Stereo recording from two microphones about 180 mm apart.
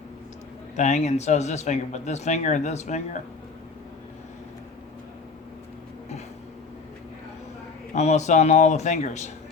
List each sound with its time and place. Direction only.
0.8 s speech: 40° left (ahead or behind)
7.9 s speech: 40° left (ahead or behind)